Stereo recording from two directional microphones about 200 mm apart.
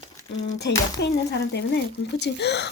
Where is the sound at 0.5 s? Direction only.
55° left (ahead or behind).